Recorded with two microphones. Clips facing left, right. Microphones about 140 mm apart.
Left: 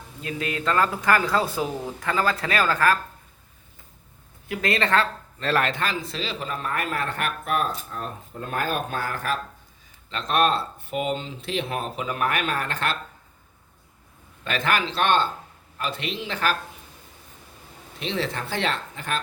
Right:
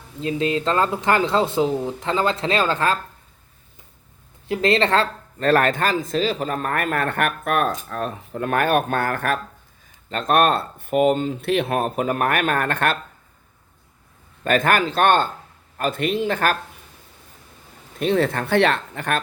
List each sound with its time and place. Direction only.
0.2 s speech: 25° right (ahead or behind)
4.4 s speech: 25° right (ahead or behind)
5.4 s a man's voice: 45° right (ahead or behind)
14.4 s speech: 50° right (ahead or behind)
18.0 s a man's voice: 50° right (ahead or behind)